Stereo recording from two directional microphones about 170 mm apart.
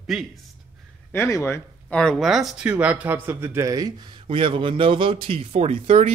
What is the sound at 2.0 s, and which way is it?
A man's voice, centre (ahead or behind).